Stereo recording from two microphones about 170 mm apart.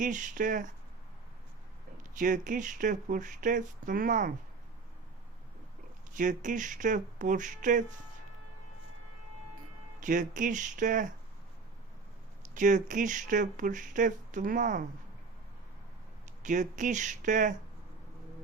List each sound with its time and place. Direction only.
0.0 s speech: 50° right (ahead or behind)
2.1 s speech: 50° right (ahead or behind)
6.1 s speech: 50° right (ahead or behind)
10.0 s speech: 50° right (ahead or behind)
12.5 s speech: 50° right (ahead or behind)
16.4 s speech: 45° right (ahead or behind)